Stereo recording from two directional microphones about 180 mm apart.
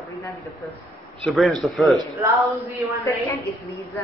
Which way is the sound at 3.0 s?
15° left (ahead or behind).